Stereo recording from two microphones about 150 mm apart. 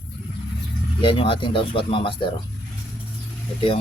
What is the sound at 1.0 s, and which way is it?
Speech, 35° left (ahead or behind).